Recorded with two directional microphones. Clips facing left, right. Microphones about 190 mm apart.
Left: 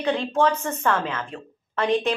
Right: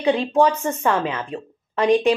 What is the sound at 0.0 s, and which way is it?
A woman's voice, 15° right (ahead or behind).